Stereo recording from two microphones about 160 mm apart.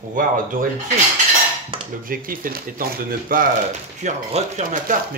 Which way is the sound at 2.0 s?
60° right (ahead or behind).